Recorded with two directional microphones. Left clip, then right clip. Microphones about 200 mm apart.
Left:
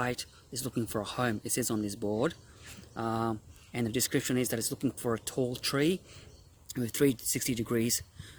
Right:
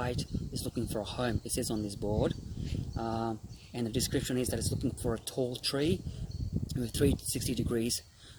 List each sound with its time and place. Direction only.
0.0 s speech: 30° left (ahead or behind)